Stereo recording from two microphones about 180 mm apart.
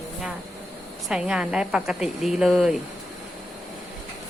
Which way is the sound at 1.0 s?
5° right (ahead or behind).